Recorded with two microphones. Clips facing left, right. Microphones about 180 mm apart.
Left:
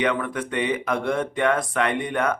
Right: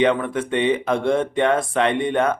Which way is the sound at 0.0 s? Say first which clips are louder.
Right 5 dB; 25° right (ahead or behind).